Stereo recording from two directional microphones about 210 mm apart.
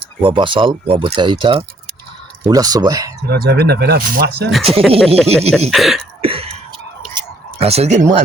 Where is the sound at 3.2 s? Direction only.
50° right (ahead or behind).